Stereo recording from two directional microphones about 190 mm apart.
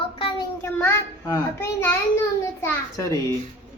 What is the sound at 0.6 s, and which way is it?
A child's voice, 10° left (ahead or behind).